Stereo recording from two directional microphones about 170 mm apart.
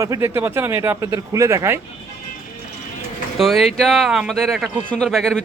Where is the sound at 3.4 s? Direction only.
Centre (ahead or behind).